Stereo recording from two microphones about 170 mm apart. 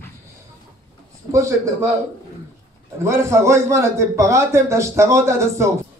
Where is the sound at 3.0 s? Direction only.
15° right (ahead or behind).